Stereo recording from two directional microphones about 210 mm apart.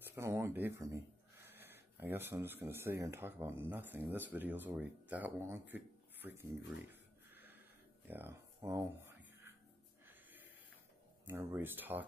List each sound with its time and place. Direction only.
0.0 s speech: 10° right (ahead or behind)
8.1 s speech: 10° right (ahead or behind)
10.0 s snort: 10° right (ahead or behind)
11.2 s speech: 10° right (ahead or behind)